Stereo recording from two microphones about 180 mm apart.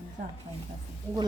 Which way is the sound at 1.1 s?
10° left (ahead or behind).